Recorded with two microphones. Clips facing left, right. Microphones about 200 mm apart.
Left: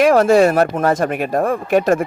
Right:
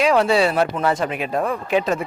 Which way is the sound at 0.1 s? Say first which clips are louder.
Left 5 dB; 45° left (ahead or behind).